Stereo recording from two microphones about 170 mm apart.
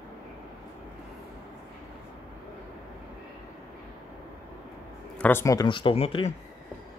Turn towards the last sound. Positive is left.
turn(degrees=35)  # may be behind; listen again after turning